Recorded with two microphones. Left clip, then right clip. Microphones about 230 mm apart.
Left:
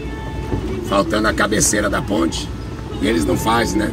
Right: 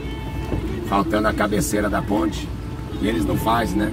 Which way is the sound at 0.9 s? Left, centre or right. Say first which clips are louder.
Left 3 dB; left.